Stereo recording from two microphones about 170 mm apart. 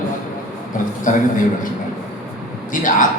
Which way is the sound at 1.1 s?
50° left (ahead or behind).